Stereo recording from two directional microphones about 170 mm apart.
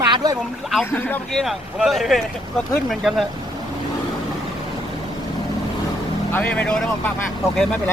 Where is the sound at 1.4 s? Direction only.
Centre (ahead or behind).